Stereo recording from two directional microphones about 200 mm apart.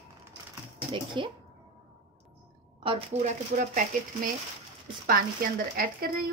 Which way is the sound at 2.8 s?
25° right (ahead or behind).